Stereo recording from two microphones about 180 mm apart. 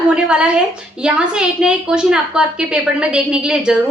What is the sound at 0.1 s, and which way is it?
A woman's voice, 5° right (ahead or behind).